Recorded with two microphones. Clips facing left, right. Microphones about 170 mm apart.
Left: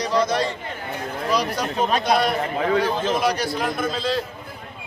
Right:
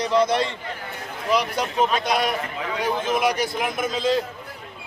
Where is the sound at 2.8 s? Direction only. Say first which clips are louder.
Left 1 dB; 20° right (ahead or behind).